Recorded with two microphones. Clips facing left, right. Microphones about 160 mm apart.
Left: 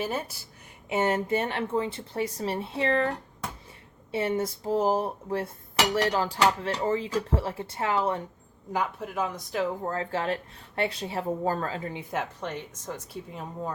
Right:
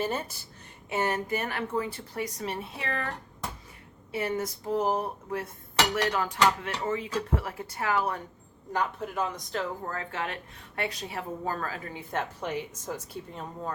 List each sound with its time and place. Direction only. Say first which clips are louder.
0.0 s a woman's voice: even; 5° left (ahead or behind)
0.9 s dishes: left 3 dB; 20° left (ahead or behind)
4.1 s dishes: left 3 dB; 25° left (ahead or behind)
8.7 s a woman's voice: left 1 dB; 5° left (ahead or behind)
9.8 s dishes: left 5 dB; 30° left (ahead or behind)
12.1 s a woman's voice: right 2 dB; centre (ahead or behind)